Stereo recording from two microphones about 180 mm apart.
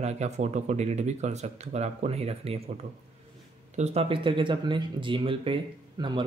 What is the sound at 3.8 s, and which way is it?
Speech, 35° right (ahead or behind).